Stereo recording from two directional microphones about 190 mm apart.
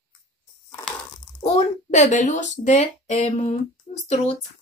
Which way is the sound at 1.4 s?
35° left (ahead or behind).